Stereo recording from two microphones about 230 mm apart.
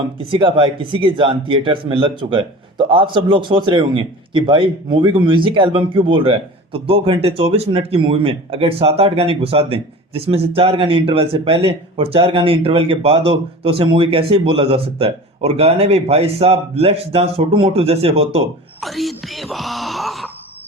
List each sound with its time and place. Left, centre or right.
0.2 s speech: right
18.8 s speech: centre